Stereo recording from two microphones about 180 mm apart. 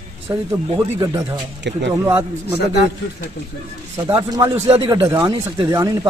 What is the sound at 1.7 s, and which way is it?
Speech, 75° right (ahead or behind).